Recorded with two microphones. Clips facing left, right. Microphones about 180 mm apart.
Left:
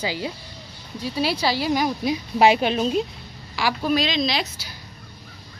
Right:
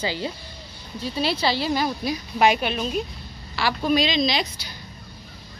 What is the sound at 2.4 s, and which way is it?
Speech, 30° left (ahead or behind).